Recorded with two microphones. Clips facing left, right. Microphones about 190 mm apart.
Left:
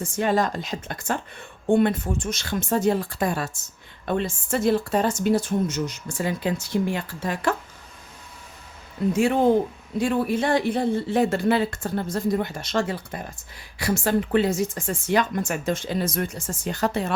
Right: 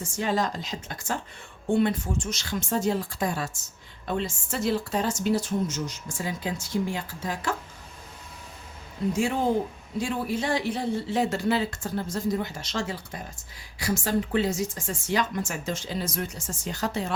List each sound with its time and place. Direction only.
0.0 s a woman's voice: 55° left (ahead or behind)
9.0 s a woman's voice: 55° left (ahead or behind)